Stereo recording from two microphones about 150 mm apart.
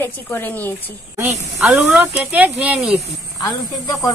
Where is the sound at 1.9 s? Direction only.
10° right (ahead or behind).